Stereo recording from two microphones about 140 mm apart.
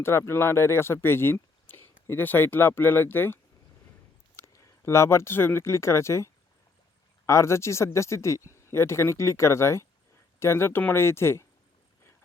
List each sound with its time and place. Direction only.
0.0 s speech: 15° left (ahead or behind)
4.4 s speech: 20° left (ahead or behind)